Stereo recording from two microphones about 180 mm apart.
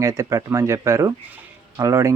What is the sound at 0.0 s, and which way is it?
Speech, 15° right (ahead or behind).